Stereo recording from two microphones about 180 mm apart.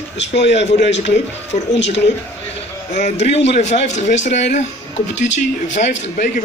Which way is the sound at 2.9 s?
40° left (ahead or behind).